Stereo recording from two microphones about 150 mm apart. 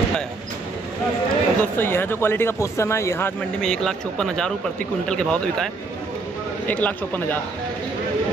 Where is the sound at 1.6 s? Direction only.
15° left (ahead or behind).